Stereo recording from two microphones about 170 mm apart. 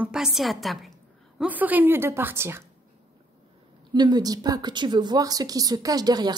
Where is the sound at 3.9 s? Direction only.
25° right (ahead or behind).